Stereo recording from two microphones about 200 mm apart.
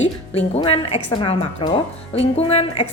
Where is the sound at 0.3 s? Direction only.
30° left (ahead or behind).